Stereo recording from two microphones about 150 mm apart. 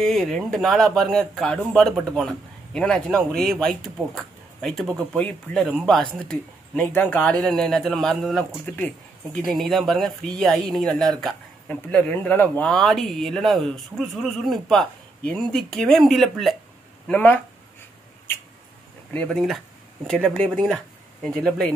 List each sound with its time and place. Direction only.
0.0 s speech: 5° left (ahead or behind)
17.1 s speech: 15° left (ahead or behind)
19.1 s speech: 5° left (ahead or behind)